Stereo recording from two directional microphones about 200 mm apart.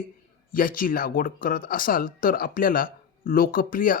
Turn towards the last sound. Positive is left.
turn(degrees=45)  # may be behind; listen again after turning